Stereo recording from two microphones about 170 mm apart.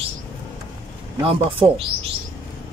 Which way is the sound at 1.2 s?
30° right (ahead or behind).